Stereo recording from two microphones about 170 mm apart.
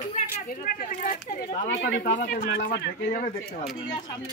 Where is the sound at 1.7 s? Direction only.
75° left (ahead or behind).